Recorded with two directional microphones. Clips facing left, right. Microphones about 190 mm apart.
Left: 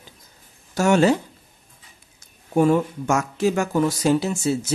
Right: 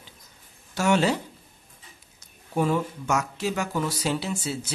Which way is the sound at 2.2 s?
50° left (ahead or behind).